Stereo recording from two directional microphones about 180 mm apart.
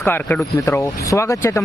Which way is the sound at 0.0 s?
10° left (ahead or behind).